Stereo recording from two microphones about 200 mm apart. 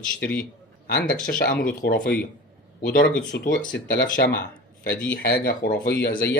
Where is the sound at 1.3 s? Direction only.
45° left (ahead or behind).